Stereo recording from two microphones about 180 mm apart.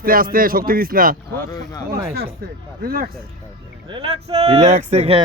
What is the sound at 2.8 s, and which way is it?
Speech, 55° right (ahead or behind).